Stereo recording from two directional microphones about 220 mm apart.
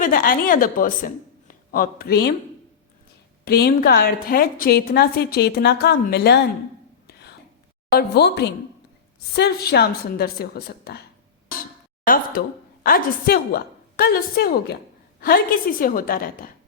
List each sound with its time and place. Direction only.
0.0 s a woman's voice: 40° left (ahead or behind)
3.4 s a woman's voice: 45° left (ahead or behind)
7.1 s whispering: 50° left (ahead or behind)
7.9 s a woman's voice: 50° left (ahead or behind)
12.0 s a woman's voice: 40° left (ahead or behind)